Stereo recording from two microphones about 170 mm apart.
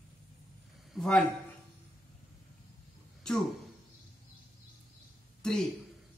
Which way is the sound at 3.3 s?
5° left (ahead or behind).